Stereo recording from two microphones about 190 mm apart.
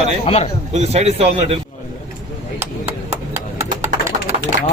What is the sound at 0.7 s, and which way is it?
Speech, 35° right (ahead or behind).